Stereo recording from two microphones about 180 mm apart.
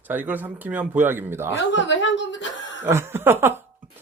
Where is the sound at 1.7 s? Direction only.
90° left.